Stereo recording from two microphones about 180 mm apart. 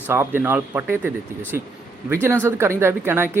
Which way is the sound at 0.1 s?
10° right (ahead or behind).